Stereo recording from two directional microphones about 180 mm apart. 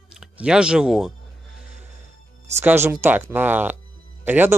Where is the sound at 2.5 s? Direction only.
15° right (ahead or behind).